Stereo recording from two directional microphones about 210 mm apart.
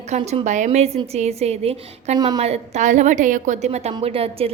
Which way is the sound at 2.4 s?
30° right (ahead or behind).